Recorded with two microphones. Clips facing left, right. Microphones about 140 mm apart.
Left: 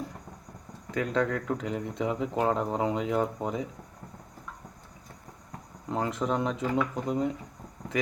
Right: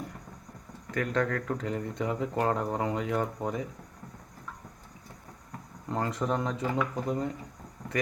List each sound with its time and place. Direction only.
0.9 s speech: 15° left (ahead or behind)
5.9 s speech: 15° left (ahead or behind)